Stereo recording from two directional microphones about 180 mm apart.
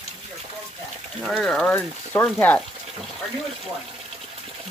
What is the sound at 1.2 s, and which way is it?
Speech, centre (ahead or behind).